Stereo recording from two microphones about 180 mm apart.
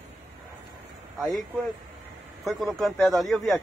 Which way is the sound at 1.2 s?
Centre (ahead or behind).